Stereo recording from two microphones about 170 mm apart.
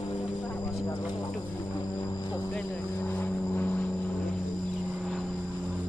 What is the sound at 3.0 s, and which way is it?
Vehicle, 10° left (ahead or behind).